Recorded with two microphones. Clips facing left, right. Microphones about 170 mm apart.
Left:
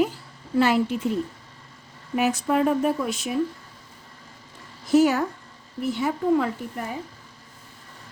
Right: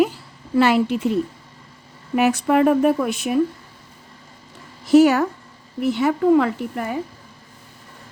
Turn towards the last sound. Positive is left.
turn(degrees=-75)  # may be behind; listen again after turning